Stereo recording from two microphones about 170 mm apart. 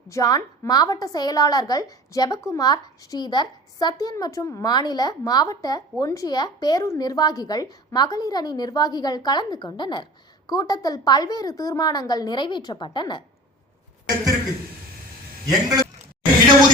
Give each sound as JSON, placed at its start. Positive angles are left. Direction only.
{"t": 0.1, "sound": "a woman's voice", "side_deg": 20}
{"t": 15.4, "sound": "a man's voice", "side_deg": -20}